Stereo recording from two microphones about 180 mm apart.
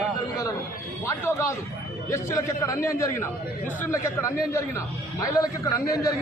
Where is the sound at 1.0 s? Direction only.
15° left (ahead or behind).